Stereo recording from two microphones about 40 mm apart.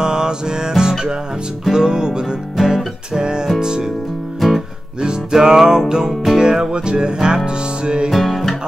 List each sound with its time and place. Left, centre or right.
0.0 s music: centre
4.4 s guitar: centre
5.0 s music: centre
8.1 s music: centre